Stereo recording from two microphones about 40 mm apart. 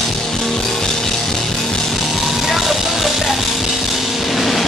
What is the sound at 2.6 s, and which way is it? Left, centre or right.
Vehicle, centre.